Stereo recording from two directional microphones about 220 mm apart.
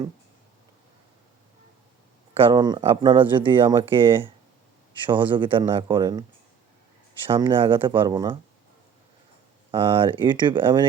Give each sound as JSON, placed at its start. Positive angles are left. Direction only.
{"t": 2.3, "sound": "speech", "side_deg": -25}
{"t": 7.3, "sound": "speech", "side_deg": -20}
{"t": 9.7, "sound": "speech", "side_deg": -25}